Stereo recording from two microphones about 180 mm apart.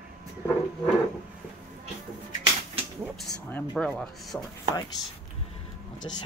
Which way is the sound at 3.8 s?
5° left (ahead or behind).